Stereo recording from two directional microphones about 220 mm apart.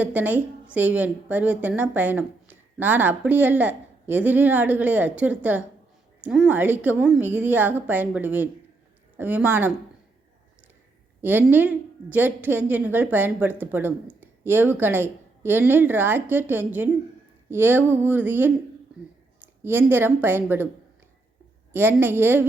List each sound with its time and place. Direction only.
0.0 s a woman's voice: 5° right (ahead or behind)
11.2 s a woman's voice: 10° right (ahead or behind)
19.6 s a woman's voice: 10° right (ahead or behind)
21.7 s a woman's voice: 10° right (ahead or behind)